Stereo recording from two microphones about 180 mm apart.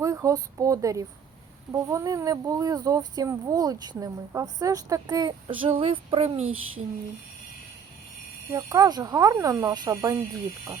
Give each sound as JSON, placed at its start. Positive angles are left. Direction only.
{"t": 0.0, "sound": "speech", "side_deg": -20}
{"t": 8.5, "sound": "speech", "side_deg": -20}